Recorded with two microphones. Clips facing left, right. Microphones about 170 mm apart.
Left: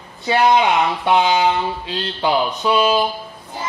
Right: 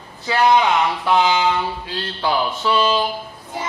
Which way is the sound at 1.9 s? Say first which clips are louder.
Left 3 dB; 20° left (ahead or behind).